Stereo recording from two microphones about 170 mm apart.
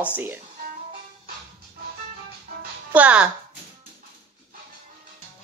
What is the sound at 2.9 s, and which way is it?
Speech, 10° right (ahead or behind).